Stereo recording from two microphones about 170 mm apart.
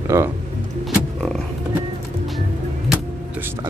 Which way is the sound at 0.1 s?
15° right (ahead or behind).